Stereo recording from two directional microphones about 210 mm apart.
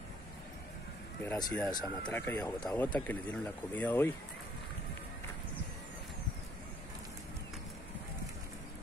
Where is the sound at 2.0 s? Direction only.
10° left (ahead or behind).